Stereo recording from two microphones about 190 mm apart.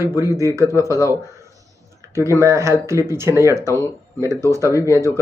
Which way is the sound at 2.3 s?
15° right (ahead or behind).